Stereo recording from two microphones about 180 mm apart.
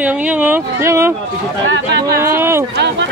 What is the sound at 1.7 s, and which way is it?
Speech, 70° right (ahead or behind).